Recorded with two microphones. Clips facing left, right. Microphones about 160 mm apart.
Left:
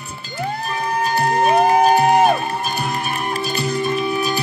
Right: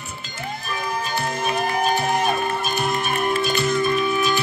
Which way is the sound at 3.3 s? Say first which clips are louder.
Right 1 dB; 35° left (ahead or behind).